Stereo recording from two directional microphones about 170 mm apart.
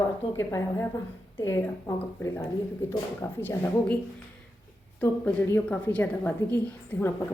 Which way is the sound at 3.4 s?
10° left (ahead or behind).